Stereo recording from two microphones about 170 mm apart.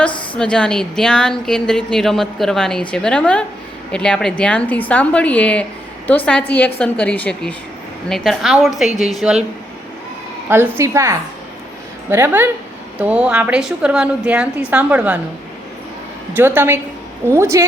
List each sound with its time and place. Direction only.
0.3 s a woman's voice: 5° left (ahead or behind)
10.5 s a woman's voice: 15° right (ahead or behind)
16.3 s a woman's voice: 10° right (ahead or behind)